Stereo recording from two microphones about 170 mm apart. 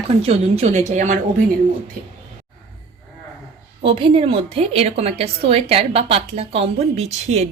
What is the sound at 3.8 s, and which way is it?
Speech, 30° right (ahead or behind).